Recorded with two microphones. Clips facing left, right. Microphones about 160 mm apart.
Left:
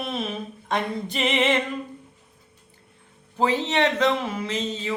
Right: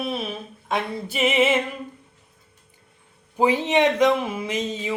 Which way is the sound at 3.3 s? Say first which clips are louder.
Right 3 dB; 15° right (ahead or behind).